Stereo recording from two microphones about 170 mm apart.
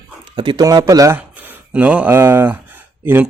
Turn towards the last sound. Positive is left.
turn(degrees=-10)  # may be behind; listen again after turning